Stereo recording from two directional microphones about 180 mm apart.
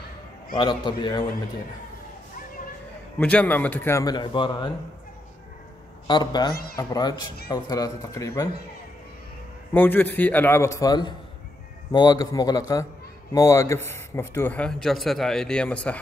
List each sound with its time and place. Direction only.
0.6 s speech: 25° left (ahead or behind)
3.2 s a man's voice: 5° left (ahead or behind); by 4.6 s 25° left (ahead or behind)
6.0 s speech: 25° left (ahead or behind)
6.5 s speech: 55° left (ahead or behind)
6.8 s speech: 20° left (ahead or behind)
9.8 s a man's voice: 10° left (ahead or behind)